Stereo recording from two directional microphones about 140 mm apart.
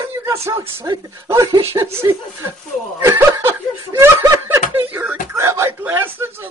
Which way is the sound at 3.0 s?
20° right (ahead or behind).